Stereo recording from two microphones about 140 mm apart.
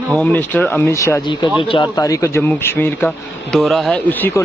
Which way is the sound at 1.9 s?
25° left (ahead or behind).